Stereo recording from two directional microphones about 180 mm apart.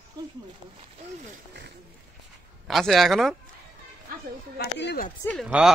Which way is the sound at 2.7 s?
Centre (ahead or behind).